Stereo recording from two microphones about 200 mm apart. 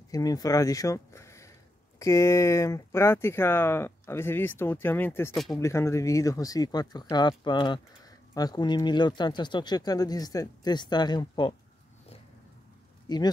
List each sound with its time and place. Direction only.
0.1 s speech: 20° left (ahead or behind)
13.1 s speech: 20° left (ahead or behind)